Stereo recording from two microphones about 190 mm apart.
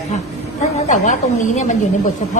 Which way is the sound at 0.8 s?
40° left (ahead or behind).